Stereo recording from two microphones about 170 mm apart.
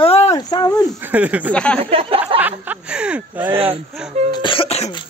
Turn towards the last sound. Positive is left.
turn(degrees=35)  # may be behind; listen again after turning